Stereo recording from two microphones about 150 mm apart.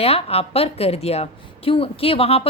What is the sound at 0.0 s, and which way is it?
A woman's voice, 40° left (ahead or behind).